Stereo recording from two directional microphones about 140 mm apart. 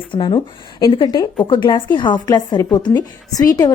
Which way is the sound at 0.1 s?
35° left (ahead or behind).